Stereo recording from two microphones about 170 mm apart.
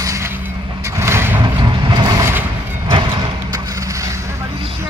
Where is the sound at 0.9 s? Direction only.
15° right (ahead or behind).